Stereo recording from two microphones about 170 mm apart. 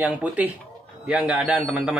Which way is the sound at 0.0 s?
10° right (ahead or behind).